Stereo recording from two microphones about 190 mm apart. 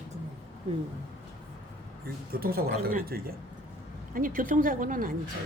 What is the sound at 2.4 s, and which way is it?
A woman's voice, 50° right (ahead or behind).